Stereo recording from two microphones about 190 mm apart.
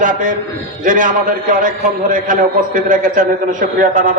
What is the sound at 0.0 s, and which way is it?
A man's voice, 45° right (ahead or behind).